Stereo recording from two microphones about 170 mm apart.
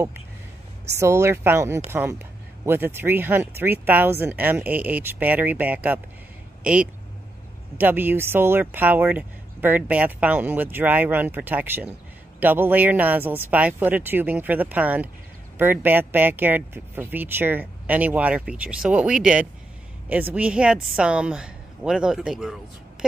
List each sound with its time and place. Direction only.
0.9 s a woman's voice: 15° right (ahead or behind)